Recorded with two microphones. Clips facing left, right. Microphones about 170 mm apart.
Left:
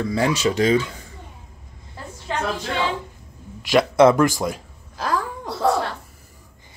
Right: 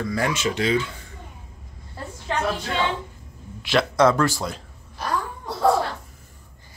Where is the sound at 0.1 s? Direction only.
30° left (ahead or behind).